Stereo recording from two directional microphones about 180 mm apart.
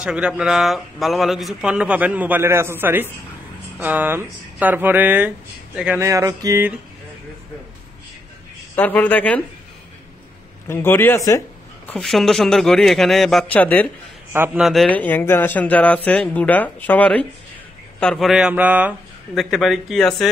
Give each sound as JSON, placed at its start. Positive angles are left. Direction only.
{"t": 0.0, "sound": "speech", "side_deg": -5}
{"t": 8.7, "sound": "a man's voice", "side_deg": 10}
{"t": 10.7, "sound": "a man's voice", "side_deg": 10}
{"t": 11.9, "sound": "speech", "side_deg": 0}
{"t": 14.3, "sound": "speech", "side_deg": -10}
{"t": 14.6, "sound": "a man's voice", "side_deg": 0}